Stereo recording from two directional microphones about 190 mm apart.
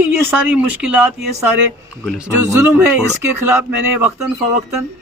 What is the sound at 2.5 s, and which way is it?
Speech, 10° right (ahead or behind).